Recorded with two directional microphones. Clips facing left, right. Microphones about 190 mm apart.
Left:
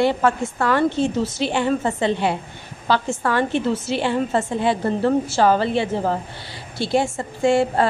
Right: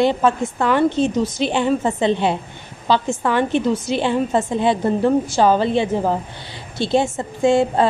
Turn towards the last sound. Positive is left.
turn(degrees=-20)  # may be behind; listen again after turning